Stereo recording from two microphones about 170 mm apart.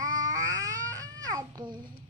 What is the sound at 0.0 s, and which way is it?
Babbling, 20° right (ahead or behind).